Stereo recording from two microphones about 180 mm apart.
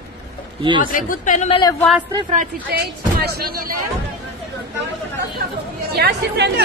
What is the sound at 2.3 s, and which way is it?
A woman's voice, 50° right (ahead or behind).